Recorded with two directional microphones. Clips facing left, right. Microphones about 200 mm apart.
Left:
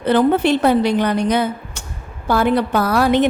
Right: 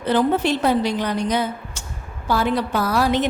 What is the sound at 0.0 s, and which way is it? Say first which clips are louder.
A woman's voice: left 4 dB; 60° left (ahead or behind).